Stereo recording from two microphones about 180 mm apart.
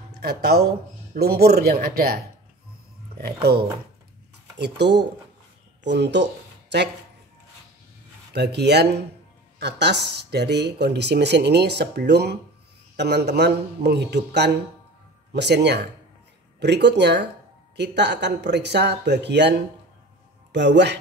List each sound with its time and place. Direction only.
0.1 s speech: 60° right (ahead or behind)
4.6 s speech: 70° right (ahead or behind)
8.4 s speech: 70° right (ahead or behind)